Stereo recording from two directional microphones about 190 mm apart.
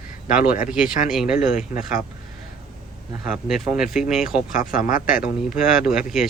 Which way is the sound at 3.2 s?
5° right (ahead or behind).